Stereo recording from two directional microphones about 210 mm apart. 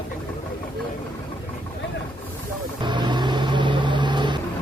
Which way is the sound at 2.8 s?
20° right (ahead or behind).